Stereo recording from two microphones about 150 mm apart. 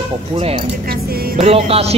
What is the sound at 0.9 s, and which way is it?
Speech, 85° right.